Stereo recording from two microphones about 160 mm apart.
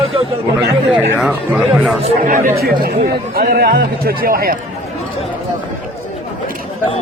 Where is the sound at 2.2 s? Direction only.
55° right (ahead or behind).